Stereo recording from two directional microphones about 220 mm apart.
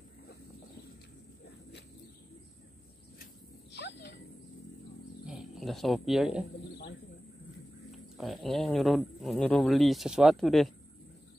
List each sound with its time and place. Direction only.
3.7 s a sound: 50° left (ahead or behind)
5.2 s speech: centre (ahead or behind)
8.2 s speech: centre (ahead or behind)